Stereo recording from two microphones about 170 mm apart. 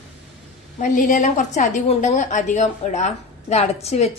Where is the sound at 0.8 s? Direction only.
45° left (ahead or behind).